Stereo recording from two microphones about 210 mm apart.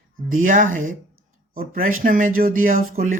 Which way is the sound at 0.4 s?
40° right (ahead or behind).